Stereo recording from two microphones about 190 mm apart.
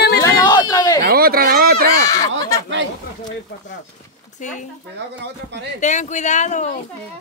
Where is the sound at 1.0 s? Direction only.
55° right (ahead or behind).